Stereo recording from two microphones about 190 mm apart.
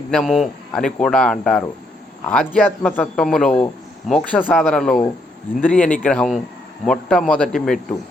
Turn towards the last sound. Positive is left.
turn(degrees=5)  # may be behind; listen again after turning